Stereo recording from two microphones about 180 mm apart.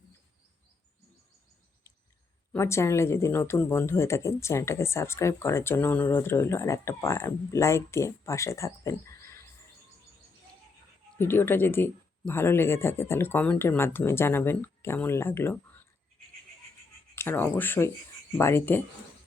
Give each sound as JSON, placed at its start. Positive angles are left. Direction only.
{"t": 2.5, "sound": "speech", "side_deg": 15}
{"t": 11.2, "sound": "speech", "side_deg": 10}
{"t": 17.2, "sound": "speech", "side_deg": 10}